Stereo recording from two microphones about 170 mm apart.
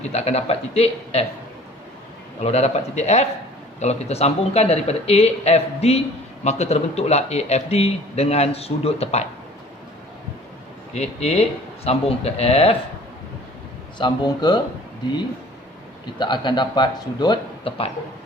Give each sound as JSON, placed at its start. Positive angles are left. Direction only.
{"t": 0.0, "sound": "speech", "side_deg": 40}
{"t": 2.4, "sound": "speech", "side_deg": 40}
{"t": 10.9, "sound": "speech", "side_deg": 40}
{"t": 14.0, "sound": "speech", "side_deg": 25}
{"t": 16.1, "sound": "speech", "side_deg": 25}